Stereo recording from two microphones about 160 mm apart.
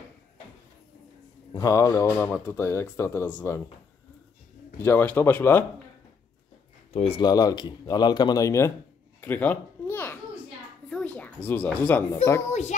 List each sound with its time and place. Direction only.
1.5 s speech: 20° left (ahead or behind)
4.8 s speech: 10° left (ahead or behind)
6.9 s speech: 35° left (ahead or behind); by 8.7 s 20° left (ahead or behind)
9.2 s babbling: 10° left (ahead or behind)
10.9 s speech: 5° left (ahead or behind)
12.4 s a child's voice: 45° left (ahead or behind)